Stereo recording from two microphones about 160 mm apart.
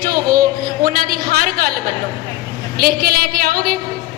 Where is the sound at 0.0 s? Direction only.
65° right (ahead or behind).